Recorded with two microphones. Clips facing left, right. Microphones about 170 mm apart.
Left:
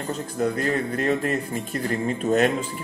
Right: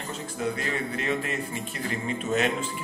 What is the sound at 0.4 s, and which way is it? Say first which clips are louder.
A man's voice: left 6 dB; 50° left (ahead or behind).